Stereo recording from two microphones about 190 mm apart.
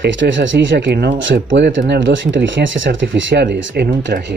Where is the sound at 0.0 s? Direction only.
75° right (ahead or behind).